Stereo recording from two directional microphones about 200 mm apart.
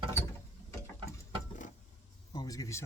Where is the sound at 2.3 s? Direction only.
20° left (ahead or behind).